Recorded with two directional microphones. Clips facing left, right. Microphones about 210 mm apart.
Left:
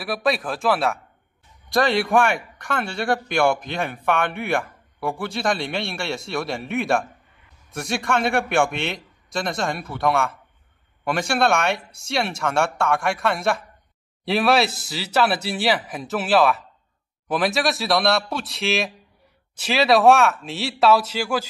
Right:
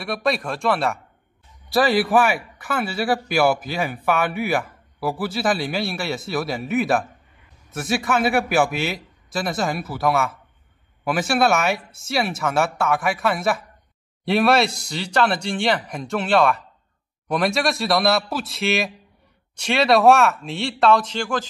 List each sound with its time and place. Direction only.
0.0 s a man's voice: centre (ahead or behind)